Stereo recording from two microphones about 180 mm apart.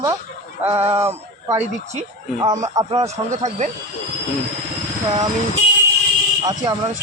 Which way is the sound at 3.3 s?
40° right (ahead or behind).